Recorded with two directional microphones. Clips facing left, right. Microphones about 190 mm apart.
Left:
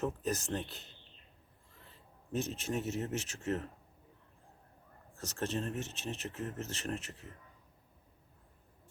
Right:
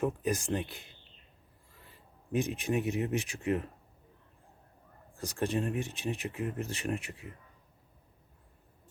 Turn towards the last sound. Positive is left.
turn(degrees=-10)  # may be behind; listen again after turning